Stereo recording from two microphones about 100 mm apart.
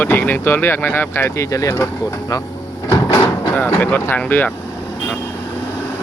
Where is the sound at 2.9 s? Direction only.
30° left (ahead or behind).